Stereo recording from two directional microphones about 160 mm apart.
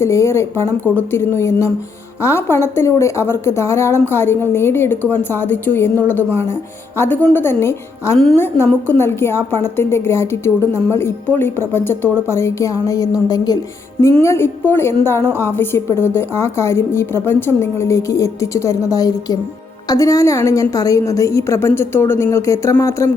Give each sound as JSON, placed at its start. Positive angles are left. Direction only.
{"t": 0.0, "sound": "a woman's voice", "side_deg": 15}
{"t": 14.3, "sound": "a woman's voice", "side_deg": 15}